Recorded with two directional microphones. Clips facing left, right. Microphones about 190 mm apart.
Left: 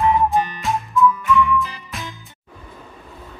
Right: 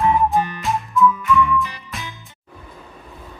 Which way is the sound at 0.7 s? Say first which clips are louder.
Even; centre (ahead or behind).